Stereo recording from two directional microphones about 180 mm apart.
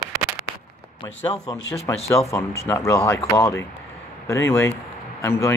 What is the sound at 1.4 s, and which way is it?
Speech, 20° left (ahead or behind).